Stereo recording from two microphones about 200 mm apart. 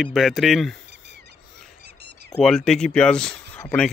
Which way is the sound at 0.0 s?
Centre (ahead or behind).